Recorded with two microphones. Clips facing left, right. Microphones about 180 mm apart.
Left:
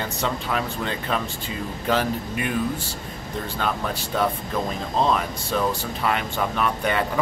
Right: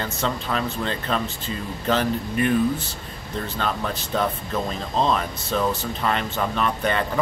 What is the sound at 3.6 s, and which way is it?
Speech, 10° left (ahead or behind).